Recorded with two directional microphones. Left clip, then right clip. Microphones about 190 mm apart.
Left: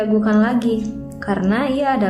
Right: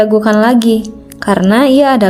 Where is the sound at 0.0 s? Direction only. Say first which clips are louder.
Right 9 dB; 55° right (ahead or behind).